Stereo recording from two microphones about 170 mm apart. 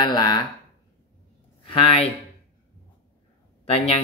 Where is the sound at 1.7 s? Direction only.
35° left (ahead or behind).